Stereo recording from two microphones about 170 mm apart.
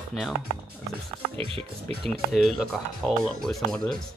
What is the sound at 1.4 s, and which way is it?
Speech, 35° right (ahead or behind).